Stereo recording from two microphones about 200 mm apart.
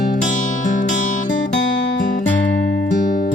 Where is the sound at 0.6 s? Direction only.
40° left (ahead or behind).